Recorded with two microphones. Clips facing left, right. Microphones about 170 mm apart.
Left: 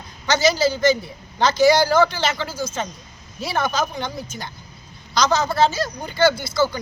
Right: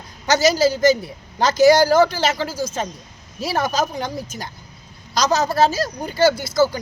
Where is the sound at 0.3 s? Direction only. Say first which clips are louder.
Right 2 dB; 40° right (ahead or behind).